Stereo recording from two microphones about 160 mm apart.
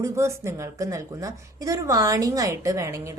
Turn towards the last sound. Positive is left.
turn(degrees=-20)  # may be behind; listen again after turning